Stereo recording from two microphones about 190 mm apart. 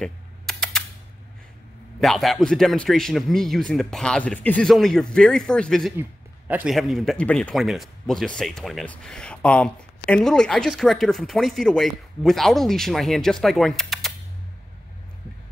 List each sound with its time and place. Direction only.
0.0 s typing: centre (ahead or behind)
2.0 s a man's voice: centre (ahead or behind)
5.9 s a man's voice: 10° right (ahead or behind)